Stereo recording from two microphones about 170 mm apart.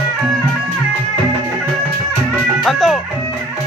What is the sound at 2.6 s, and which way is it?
Music, centre (ahead or behind).